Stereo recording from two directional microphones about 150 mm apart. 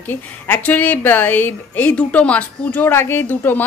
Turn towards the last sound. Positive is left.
turn(degrees=15)  # may be behind; listen again after turning